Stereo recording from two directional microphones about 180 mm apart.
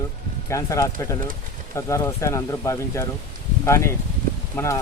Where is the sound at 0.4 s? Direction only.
15° left (ahead or behind).